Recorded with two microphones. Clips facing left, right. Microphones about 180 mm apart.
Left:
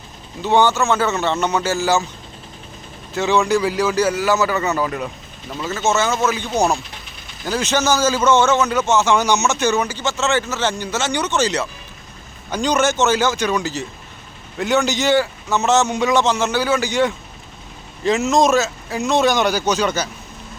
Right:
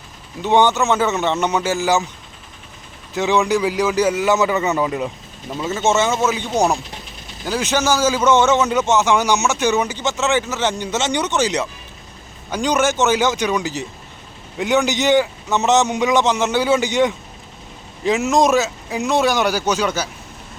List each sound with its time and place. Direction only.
0.4 s a man's voice: 20° right (ahead or behind)
3.2 s a man's voice: 15° right (ahead or behind)